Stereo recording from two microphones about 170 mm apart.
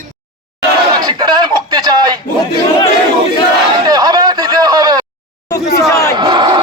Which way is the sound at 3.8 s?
25° right (ahead or behind).